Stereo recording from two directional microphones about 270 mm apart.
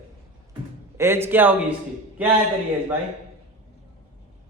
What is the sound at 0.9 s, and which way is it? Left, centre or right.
A man's voice, centre.